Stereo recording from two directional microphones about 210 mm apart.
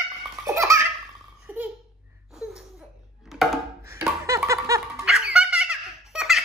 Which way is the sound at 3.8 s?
10° right (ahead or behind).